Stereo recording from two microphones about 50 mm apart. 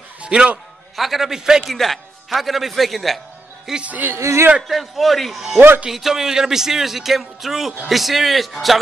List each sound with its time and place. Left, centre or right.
0.2 s a man's voice: right
0.9 s a man's voice: centre
1.7 s speech: centre
3.8 s speech: right
4.1 s speech: right
4.6 s speech: centre